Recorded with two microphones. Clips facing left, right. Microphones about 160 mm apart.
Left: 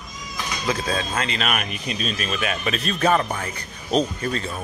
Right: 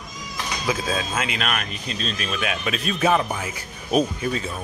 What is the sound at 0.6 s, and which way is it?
Speech, 5° right (ahead or behind).